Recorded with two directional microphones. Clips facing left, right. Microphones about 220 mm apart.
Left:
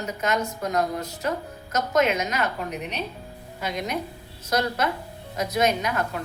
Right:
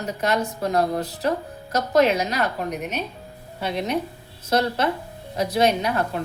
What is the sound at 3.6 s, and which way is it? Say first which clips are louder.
A woman's voice: right 4 dB; 30° right (ahead or behind).